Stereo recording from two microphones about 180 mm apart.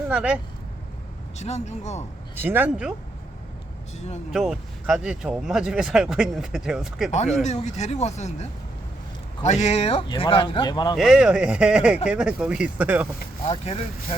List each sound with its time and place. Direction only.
0.1 s speech: 5° right (ahead or behind)
1.4 s speech: 40° left (ahead or behind)
2.3 s speech: 10° right (ahead or behind)
4.3 s speech: 5° right (ahead or behind)
7.4 s speech: 40° left (ahead or behind); by 10.9 s 25° left (ahead or behind)
10.9 s speech: centre (ahead or behind)
13.5 s speech: 35° left (ahead or behind)